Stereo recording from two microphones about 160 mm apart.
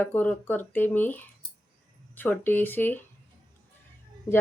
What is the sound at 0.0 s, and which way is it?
Speech, 10° left (ahead or behind).